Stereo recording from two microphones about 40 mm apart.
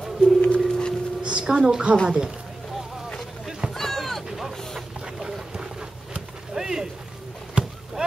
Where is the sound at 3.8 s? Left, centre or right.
Centre.